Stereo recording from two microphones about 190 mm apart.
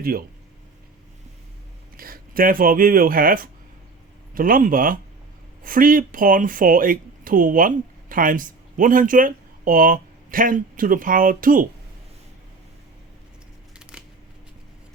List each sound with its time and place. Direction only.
0.0 s speech: 50° right (ahead or behind)
2.0 s speech: 50° right (ahead or behind)
13.9 s scissors: 5° right (ahead or behind)